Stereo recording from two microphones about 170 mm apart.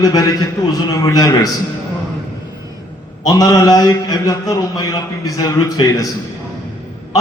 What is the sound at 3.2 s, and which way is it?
A man's voice, 20° left (ahead or behind).